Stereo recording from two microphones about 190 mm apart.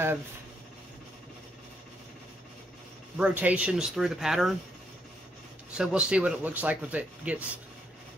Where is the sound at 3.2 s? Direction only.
5° right (ahead or behind).